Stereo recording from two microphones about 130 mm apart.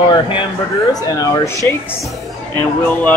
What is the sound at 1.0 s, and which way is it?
Speech, 25° left (ahead or behind).